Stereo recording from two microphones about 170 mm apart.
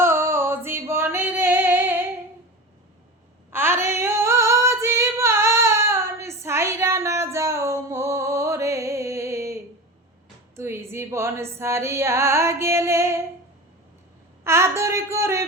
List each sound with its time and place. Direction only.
0.0 s singing: 15° right (ahead or behind)
3.5 s female singing: 15° right (ahead or behind)
10.5 s music: 15° right (ahead or behind)
14.4 s a sound: 15° right (ahead or behind)